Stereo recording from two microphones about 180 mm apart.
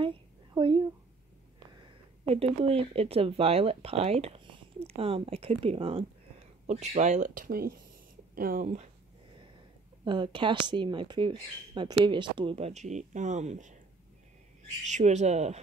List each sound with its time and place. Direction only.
1.8 s speech: 30° right (ahead or behind); by 8.6 s 55° right (ahead or behind)
10.0 s speech: 25° right (ahead or behind)
14.9 s speech: 40° right (ahead or behind)